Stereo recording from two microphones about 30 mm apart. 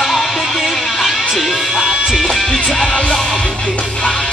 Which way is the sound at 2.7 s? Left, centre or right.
Centre.